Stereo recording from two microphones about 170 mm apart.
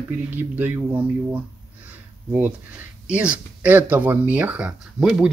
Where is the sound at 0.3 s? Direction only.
10° right (ahead or behind).